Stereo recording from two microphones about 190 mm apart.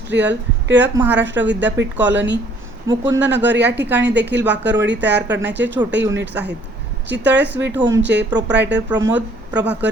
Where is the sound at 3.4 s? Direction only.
65° right (ahead or behind).